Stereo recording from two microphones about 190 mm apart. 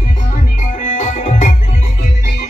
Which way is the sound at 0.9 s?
40° left (ahead or behind).